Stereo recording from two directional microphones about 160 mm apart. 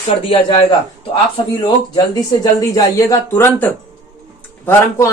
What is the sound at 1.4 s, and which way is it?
Speech, 30° left (ahead or behind).